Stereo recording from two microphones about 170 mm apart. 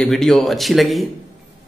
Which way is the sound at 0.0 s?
5° left (ahead or behind).